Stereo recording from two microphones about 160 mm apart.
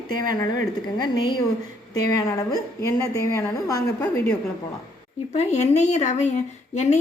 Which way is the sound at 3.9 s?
15° left (ahead or behind).